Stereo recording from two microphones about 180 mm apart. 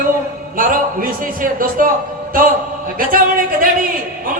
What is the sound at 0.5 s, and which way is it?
A man's voice, 50° right (ahead or behind).